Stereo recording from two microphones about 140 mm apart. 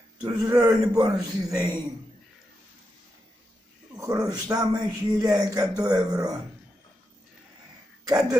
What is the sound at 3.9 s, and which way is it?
Speech, 25° right (ahead or behind).